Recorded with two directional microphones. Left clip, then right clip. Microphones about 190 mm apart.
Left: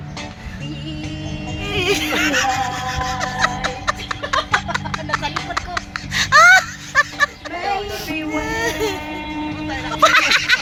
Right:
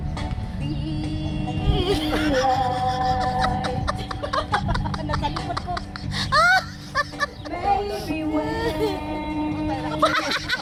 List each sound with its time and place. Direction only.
1.5 s music: 15° left (ahead or behind)
2.9 s rub: 40° left (ahead or behind)
3.6 s music: 15° left (ahead or behind)
5.3 s a sound: 35° left (ahead or behind)
6.1 s wail: 15° left (ahead or behind)
9.7 s a sound: 15° left (ahead or behind)